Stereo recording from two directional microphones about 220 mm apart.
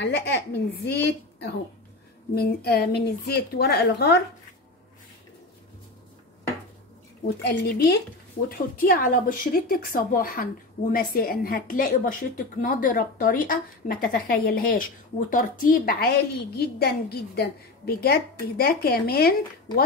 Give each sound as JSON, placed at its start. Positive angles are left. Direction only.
{"t": 0.1, "sound": "a woman's voice", "side_deg": 50}
{"t": 7.4, "sound": "a woman's voice", "side_deg": 45}